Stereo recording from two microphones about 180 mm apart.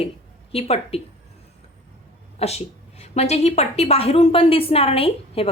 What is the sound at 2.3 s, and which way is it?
A woman's voice, 35° left (ahead or behind).